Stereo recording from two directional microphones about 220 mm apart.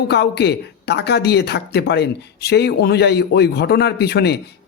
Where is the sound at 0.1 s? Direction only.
50° left (ahead or behind).